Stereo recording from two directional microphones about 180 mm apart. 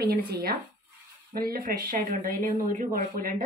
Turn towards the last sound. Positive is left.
turn(degrees=-50)  # may be behind; listen again after turning